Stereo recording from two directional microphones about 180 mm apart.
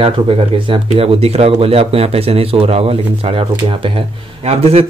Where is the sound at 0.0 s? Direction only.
30° right (ahead or behind).